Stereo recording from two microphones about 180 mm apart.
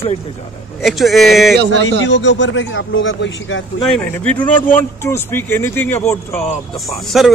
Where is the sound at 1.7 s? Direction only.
90° left.